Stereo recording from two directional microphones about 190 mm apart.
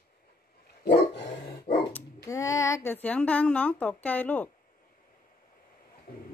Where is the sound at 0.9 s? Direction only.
55° left (ahead or behind).